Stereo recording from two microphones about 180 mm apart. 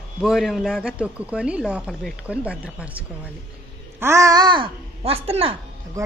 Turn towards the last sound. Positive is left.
turn(degrees=-15)  # may be behind; listen again after turning